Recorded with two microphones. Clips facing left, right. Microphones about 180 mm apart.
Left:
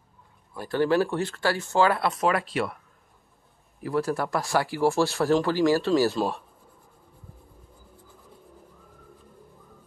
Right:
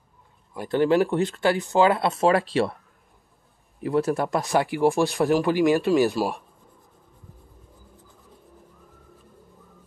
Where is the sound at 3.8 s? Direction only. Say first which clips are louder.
Right 3 dB; 20° right (ahead or behind).